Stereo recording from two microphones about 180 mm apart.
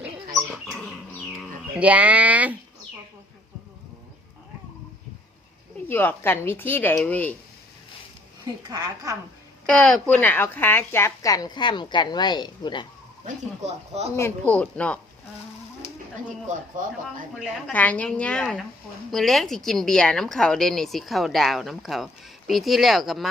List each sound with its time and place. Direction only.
1.4 s speech: 10° right (ahead or behind)
5.9 s speech: 10° left (ahead or behind)
9.6 s speech: 5° left (ahead or behind); by 12.8 s 25° left (ahead or behind)
13.2 s speech: 40° right (ahead or behind)
14.2 s speech: 10° left (ahead or behind)
16.5 s speech: 45° right (ahead or behind)
17.7 s speech: 10° left (ahead or behind)